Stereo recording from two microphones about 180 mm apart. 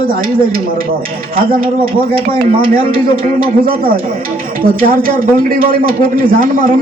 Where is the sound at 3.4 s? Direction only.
55° right (ahead or behind).